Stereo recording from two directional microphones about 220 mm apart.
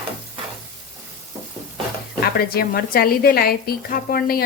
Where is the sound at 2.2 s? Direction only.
45° left (ahead or behind).